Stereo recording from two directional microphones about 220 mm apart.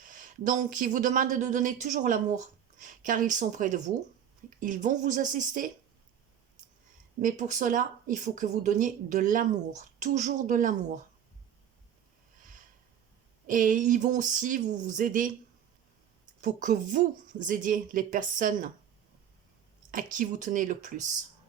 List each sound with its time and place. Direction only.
0.0 s speech: 35° right (ahead or behind)
7.2 s speech: 35° right (ahead or behind)
13.5 s speech: 35° right (ahead or behind)
16.4 s speech: 35° right (ahead or behind)
19.9 s speech: 35° right (ahead or behind)